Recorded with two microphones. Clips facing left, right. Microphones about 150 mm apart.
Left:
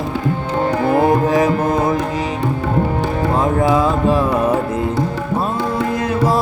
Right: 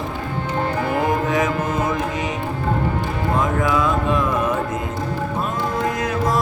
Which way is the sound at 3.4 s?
30° left (ahead or behind).